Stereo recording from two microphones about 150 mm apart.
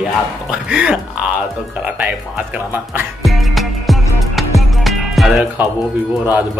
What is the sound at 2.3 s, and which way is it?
Speech, 10° right (ahead or behind).